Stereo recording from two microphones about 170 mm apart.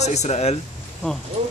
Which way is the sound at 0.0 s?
40° left (ahead or behind).